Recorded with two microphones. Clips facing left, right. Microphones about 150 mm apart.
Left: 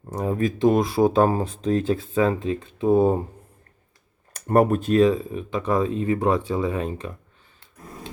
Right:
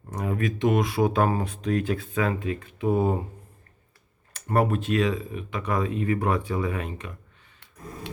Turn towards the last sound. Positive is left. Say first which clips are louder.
# left 4 dB
turn(degrees=30)  # may be behind; listen again after turning